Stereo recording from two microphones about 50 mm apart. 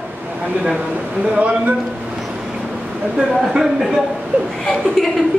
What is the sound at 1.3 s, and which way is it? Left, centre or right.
Speech, right.